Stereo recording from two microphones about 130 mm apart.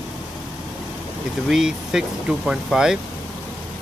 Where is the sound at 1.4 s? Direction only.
5° right (ahead or behind).